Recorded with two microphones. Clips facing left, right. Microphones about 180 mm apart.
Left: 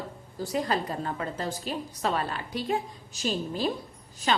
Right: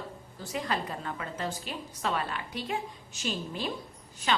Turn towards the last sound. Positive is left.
turn(degrees=40)  # may be behind; listen again after turning